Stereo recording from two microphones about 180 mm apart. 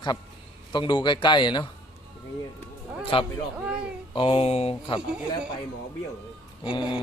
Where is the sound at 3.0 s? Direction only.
30° left (ahead or behind).